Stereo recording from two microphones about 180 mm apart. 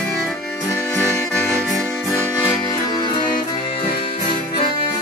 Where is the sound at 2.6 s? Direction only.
25° left (ahead or behind).